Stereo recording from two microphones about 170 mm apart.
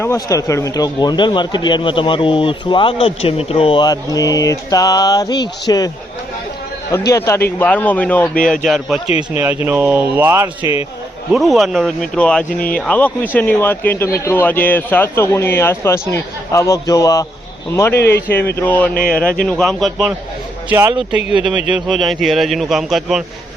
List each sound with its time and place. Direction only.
0.0 s speech: 15° left (ahead or behind)
7.1 s a man's voice: 15° left (ahead or behind)
9.0 s speech: 35° left (ahead or behind)
9.4 s speech: 15° right (ahead or behind)
10.6 s speech: 30° left (ahead or behind)
11.3 s a man's voice: centre (ahead or behind)
12.5 s speech: 55° left (ahead or behind)
12.7 s speech: 5° left (ahead or behind)
17.9 s speech: 75° left (ahead or behind)
18.6 s a man's voice: 10° left (ahead or behind)
20.7 s speech: 15° right (ahead or behind)
21.8 s a man's voice: centre (ahead or behind)